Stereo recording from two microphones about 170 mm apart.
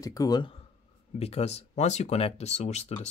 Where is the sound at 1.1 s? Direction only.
35° left (ahead or behind).